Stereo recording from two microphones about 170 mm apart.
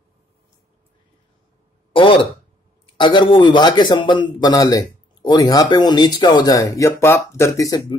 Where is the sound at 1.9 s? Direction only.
30° left (ahead or behind).